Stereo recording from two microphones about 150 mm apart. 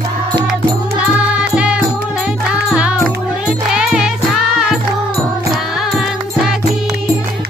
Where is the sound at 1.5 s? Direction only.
10° right (ahead or behind).